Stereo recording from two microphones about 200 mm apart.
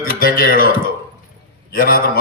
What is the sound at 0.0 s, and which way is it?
Speech, 45° left (ahead or behind).